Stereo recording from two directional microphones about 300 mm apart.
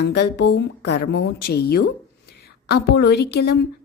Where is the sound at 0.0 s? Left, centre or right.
Left.